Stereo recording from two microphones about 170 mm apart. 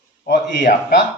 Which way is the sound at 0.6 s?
50° left (ahead or behind).